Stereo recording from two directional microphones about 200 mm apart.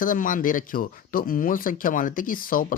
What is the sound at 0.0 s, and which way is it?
Speech, 40° left (ahead or behind).